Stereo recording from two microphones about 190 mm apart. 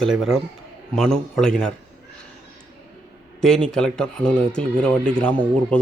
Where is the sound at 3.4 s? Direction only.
5° left (ahead or behind).